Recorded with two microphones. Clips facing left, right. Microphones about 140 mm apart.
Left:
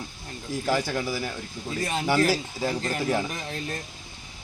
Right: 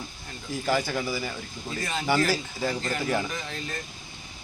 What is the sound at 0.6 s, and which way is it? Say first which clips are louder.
Speech: even; 5° left (ahead or behind).